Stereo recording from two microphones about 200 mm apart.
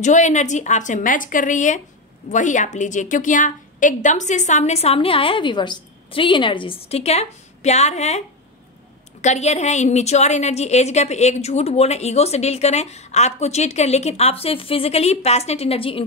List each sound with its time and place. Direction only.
0.0 s a woman's voice: 35° left (ahead or behind)
9.2 s a woman's voice: 35° left (ahead or behind)